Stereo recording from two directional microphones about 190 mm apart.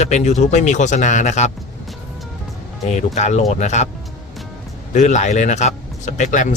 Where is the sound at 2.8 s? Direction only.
35° left (ahead or behind).